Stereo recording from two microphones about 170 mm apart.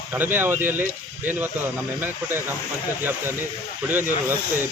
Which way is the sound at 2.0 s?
15° right (ahead or behind).